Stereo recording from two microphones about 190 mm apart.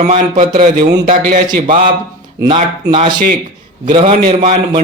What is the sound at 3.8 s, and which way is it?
Speech, 30° right (ahead or behind).